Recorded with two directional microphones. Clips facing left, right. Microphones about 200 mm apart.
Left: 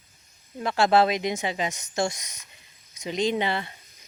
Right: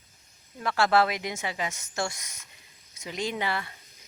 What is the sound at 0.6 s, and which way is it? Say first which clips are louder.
Speech: left 3 dB; 20° left (ahead or behind).